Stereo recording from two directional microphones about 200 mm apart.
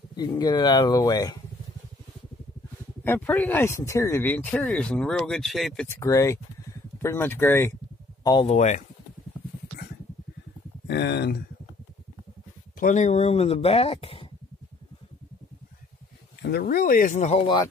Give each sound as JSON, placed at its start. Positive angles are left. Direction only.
{"t": 0.1, "sound": "speech", "side_deg": 20}
{"t": 3.0, "sound": "speech", "side_deg": 10}
{"t": 5.9, "sound": "speech", "side_deg": 15}
{"t": 8.5, "sound": "speech", "side_deg": 35}
{"t": 10.9, "sound": "speech", "side_deg": 60}
{"t": 12.7, "sound": "speech", "side_deg": 40}
{"t": 16.4, "sound": "speech", "side_deg": 50}